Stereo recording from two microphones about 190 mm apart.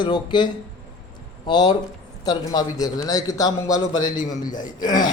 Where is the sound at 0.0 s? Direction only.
25° left (ahead or behind).